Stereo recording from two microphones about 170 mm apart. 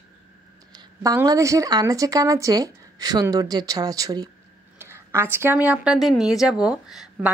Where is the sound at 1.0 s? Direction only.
20° right (ahead or behind).